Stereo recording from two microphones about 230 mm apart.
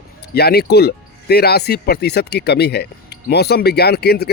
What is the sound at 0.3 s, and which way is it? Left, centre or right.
Speech, left.